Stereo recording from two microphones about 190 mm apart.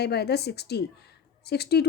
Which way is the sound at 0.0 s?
60° left (ahead or behind).